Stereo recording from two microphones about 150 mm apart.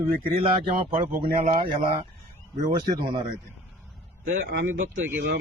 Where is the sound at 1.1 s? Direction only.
70° right (ahead or behind).